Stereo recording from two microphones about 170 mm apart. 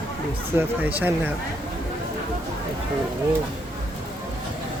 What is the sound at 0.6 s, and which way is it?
Speech, 10° right (ahead or behind).